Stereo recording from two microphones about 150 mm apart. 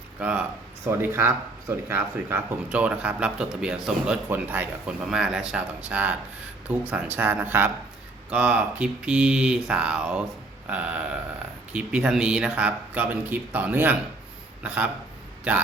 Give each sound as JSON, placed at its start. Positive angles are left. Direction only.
{"t": 0.2, "sound": "speech", "side_deg": -10}